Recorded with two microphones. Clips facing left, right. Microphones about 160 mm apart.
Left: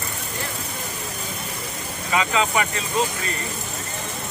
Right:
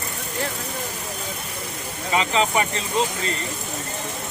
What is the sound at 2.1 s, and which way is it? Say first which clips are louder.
Speech: right 1 dB; 30° right (ahead or behind).